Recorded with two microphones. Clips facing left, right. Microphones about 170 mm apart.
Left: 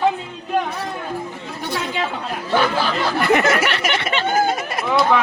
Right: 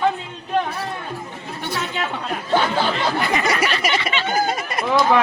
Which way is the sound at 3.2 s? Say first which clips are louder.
Left 8 dB; 60° left (ahead or behind).